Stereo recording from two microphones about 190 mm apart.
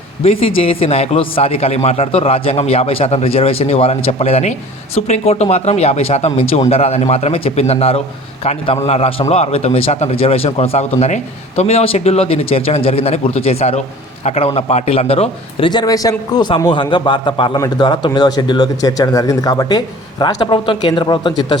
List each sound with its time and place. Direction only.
0.2 s speech: 30° left (ahead or behind)